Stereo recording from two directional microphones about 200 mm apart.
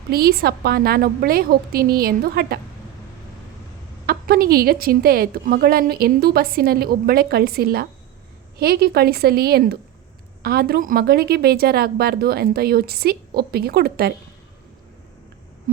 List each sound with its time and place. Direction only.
0.1 s a woman's voice: 50° right (ahead or behind)
4.0 s a woman's voice: 50° right (ahead or behind)